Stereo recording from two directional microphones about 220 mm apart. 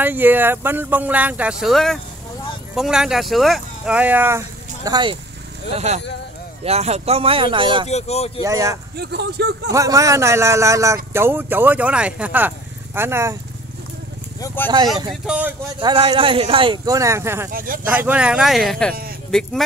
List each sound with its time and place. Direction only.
0.0 s speech: 10° right (ahead or behind)
6.6 s speech: 30° right (ahead or behind)
7.9 s speech: 30° left (ahead or behind)
8.4 s speech: 15° right (ahead or behind)
8.9 s speech: 50° right (ahead or behind)
9.7 s speech: 15° right (ahead or behind)
14.4 s speech: 10° left (ahead or behind)
15.2 s speech: 5° right (ahead or behind)
15.8 s speech: 25° right (ahead or behind)
17.5 s speech: 40° right (ahead or behind)
17.8 s speech: 5° right (ahead or behind)